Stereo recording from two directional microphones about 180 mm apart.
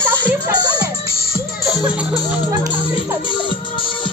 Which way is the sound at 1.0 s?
60° left (ahead or behind).